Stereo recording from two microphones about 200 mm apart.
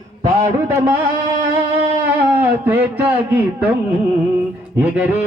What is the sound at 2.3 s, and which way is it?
Speech, 10° right (ahead or behind).